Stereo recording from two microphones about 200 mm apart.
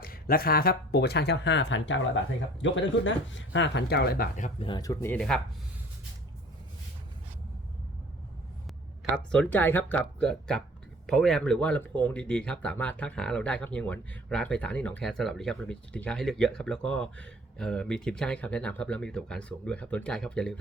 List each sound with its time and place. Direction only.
0.0 s speech: 50° left (ahead or behind)
4.6 s speech: 20° left (ahead or behind)
9.1 s speech: 5° left (ahead or behind)